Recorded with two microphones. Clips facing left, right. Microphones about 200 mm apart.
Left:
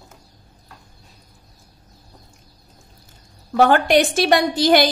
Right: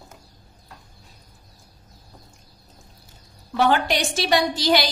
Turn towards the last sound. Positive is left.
turn(degrees=55)  # may be behind; listen again after turning